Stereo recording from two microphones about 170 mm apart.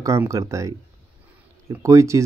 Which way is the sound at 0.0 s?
20° right (ahead or behind).